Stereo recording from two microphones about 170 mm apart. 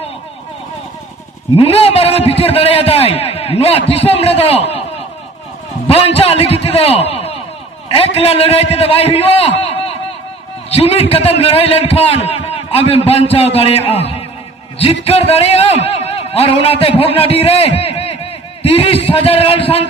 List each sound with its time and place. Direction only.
1.5 s a man's voice: 35° left (ahead or behind)
7.1 s a sound: 35° left (ahead or behind)
7.9 s a man's voice: 35° left (ahead or behind)